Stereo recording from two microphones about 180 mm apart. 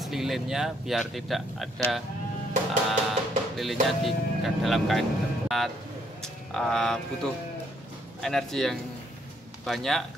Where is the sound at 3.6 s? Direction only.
Centre (ahead or behind).